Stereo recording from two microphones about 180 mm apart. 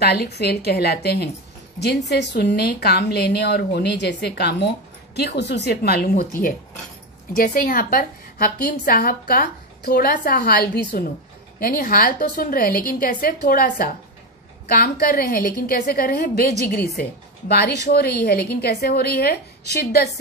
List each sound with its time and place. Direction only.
0.0 s a woman's voice: 65° left (ahead or behind)